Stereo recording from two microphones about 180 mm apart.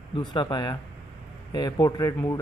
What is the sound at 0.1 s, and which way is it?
A man's voice, 25° left (ahead or behind).